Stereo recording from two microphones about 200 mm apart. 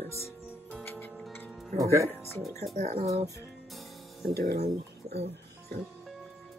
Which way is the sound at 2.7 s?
30° right (ahead or behind).